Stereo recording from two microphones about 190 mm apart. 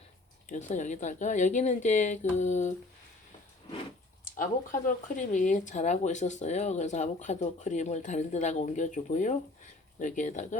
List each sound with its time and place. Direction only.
0.4 s speech: 40° left (ahead or behind)
4.4 s speech: 45° left (ahead or behind)